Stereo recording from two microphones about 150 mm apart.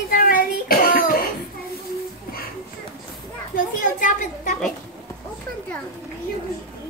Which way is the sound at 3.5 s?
65° left (ahead or behind).